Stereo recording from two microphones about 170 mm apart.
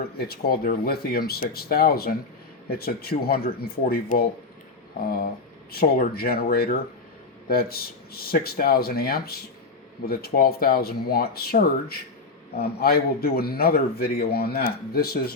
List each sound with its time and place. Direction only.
0.0 s a man's voice: 65° left (ahead or behind)